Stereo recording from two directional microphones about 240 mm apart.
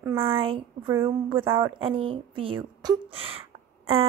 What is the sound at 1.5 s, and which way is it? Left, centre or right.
Speech, centre.